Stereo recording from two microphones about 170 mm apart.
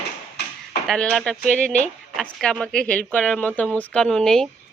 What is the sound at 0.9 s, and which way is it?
Speech, 5° left (ahead or behind).